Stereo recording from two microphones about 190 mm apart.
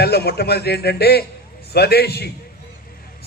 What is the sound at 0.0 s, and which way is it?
A man's voice, 55° left (ahead or behind).